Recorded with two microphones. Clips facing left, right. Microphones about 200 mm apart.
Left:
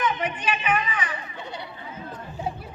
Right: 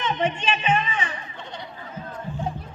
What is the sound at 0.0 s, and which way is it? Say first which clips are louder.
Speech: right 2 dB; 25° right (ahead or behind).